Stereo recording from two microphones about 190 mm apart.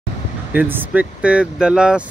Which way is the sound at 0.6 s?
10° right (ahead or behind).